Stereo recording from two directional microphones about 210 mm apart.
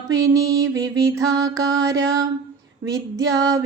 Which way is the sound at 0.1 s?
15° right (ahead or behind).